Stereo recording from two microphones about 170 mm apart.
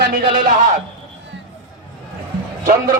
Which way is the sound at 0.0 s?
55° right (ahead or behind).